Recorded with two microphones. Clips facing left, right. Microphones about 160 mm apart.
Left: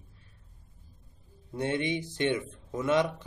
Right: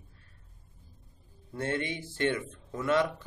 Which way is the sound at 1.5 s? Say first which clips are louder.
Left 3 dB; 20° left (ahead or behind).